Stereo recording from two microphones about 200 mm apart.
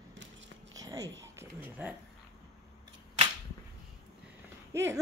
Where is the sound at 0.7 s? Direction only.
15° right (ahead or behind).